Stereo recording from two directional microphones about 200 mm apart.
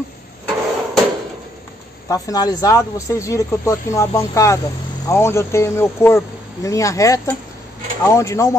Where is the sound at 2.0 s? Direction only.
15° left (ahead or behind).